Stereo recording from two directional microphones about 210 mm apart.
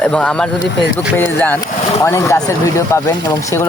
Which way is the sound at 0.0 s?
5° left (ahead or behind).